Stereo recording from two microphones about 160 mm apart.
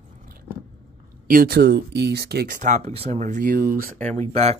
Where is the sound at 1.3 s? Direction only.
70° right (ahead or behind); by 2.6 s 90° right.